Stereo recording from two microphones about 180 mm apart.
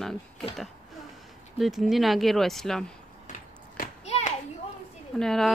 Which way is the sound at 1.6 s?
Centre (ahead or behind).